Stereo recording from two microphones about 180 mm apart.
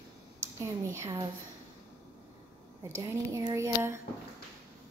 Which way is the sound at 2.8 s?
15° right (ahead or behind).